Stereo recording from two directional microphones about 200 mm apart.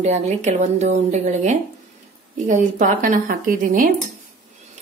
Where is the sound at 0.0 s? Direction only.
35° right (ahead or behind).